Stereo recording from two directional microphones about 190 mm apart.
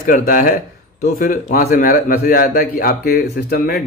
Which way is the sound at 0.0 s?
45° left (ahead or behind).